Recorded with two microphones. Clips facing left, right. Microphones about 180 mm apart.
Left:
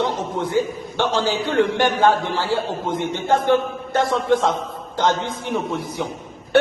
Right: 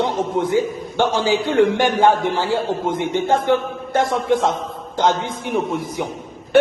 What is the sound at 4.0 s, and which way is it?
Speech, 20° right (ahead or behind).